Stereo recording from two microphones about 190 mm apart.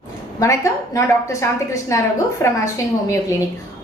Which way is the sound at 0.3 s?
15° left (ahead or behind).